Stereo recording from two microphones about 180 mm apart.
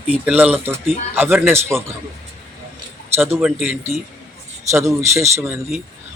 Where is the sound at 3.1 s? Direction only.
15° right (ahead or behind).